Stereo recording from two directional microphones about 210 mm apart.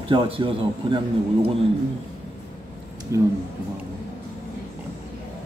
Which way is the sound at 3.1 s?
15° right (ahead or behind).